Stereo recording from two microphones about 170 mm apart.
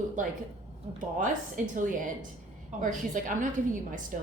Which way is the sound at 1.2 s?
50° right (ahead or behind).